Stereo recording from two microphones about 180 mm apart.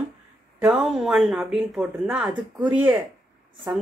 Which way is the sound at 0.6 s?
5° right (ahead or behind).